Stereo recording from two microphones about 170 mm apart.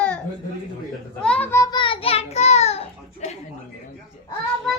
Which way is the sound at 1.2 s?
5° left (ahead or behind).